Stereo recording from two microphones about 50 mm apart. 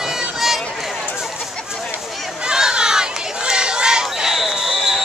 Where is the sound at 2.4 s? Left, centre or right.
Centre.